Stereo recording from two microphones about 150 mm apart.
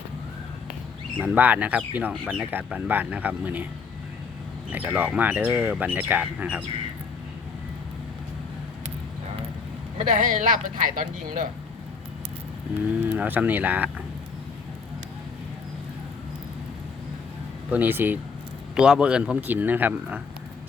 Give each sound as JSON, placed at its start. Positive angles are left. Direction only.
{"t": 1.2, "sound": "speech", "side_deg": -10}
{"t": 4.7, "sound": "speech", "side_deg": -10}
{"t": 10.0, "sound": "speech", "side_deg": -60}
{"t": 13.1, "sound": "speech", "side_deg": -10}
{"t": 17.7, "sound": "speech", "side_deg": -10}